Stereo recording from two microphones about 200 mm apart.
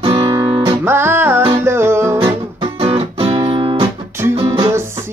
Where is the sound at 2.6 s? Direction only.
25° right (ahead or behind).